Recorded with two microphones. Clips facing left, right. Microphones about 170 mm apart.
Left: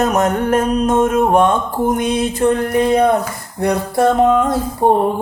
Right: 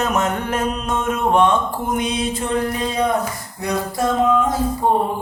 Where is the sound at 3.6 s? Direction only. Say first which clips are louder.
Left 6 dB; 65° left (ahead or behind).